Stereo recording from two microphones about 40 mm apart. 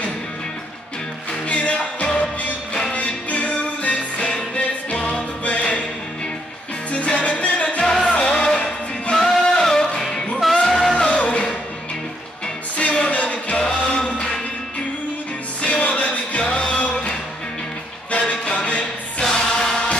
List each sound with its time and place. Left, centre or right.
1.5 s music: left
6.9 s music: left
7.8 s music: centre
9.1 s music: centre
10.7 s music: centre
12.7 s music: left
15.6 s music: left
18.1 s music: left
19.2 s music: centre